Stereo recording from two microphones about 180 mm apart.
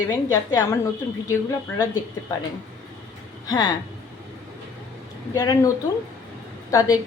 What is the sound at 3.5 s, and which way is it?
Speech, 25° left (ahead or behind).